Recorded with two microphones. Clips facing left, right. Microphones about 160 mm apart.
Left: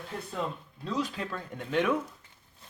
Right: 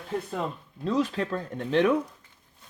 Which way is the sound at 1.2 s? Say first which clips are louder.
Right 7 dB; 40° right (ahead or behind).